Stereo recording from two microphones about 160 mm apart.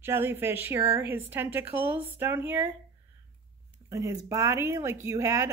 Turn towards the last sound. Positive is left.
turn(degrees=-15)  # may be behind; listen again after turning